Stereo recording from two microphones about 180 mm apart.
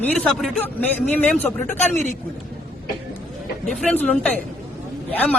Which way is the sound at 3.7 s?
5° left (ahead or behind).